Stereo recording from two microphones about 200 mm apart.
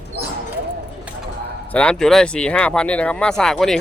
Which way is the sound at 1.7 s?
5° left (ahead or behind).